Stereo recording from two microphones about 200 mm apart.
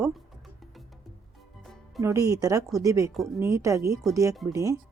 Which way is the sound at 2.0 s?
15° right (ahead or behind).